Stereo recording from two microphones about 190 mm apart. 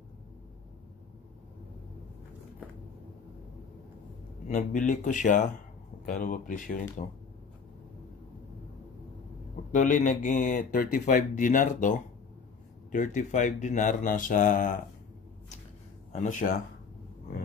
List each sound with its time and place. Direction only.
4.5 s speech: 40° left (ahead or behind)
9.7 s speech: 40° left (ahead or behind)
16.1 s speech: 40° left (ahead or behind)